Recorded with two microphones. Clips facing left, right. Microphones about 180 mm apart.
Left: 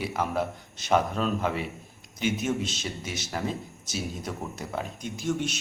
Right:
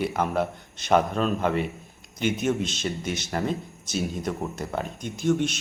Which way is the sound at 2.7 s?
50° right (ahead or behind).